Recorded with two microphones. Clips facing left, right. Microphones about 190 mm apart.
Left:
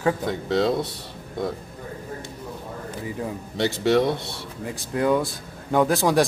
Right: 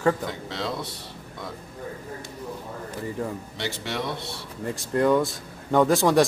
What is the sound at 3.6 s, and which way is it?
Speech, 45° left (ahead or behind).